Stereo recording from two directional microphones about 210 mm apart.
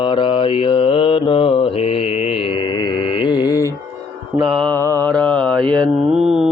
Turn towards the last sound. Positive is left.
turn(degrees=0)  # may be behind; listen again after turning